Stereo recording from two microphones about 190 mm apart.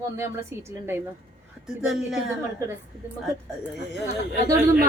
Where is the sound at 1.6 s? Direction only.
5° right (ahead or behind).